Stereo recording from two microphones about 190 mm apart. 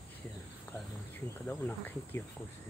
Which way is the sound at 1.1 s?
10° left (ahead or behind).